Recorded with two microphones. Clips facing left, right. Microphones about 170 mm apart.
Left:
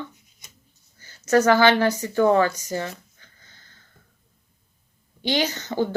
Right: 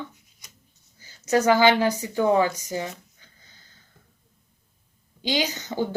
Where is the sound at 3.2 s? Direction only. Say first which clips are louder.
Left 1 dB; 15° right (ahead or behind).